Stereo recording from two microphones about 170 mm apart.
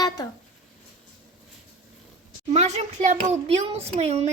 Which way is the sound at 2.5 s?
40° right (ahead or behind).